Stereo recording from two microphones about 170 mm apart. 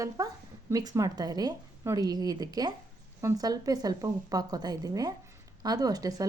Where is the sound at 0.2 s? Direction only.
20° right (ahead or behind).